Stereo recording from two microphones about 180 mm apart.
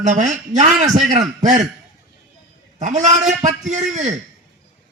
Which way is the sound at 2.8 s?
40° right (ahead or behind).